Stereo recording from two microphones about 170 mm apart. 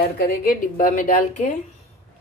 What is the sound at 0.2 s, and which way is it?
A woman's voice, 55° left (ahead or behind).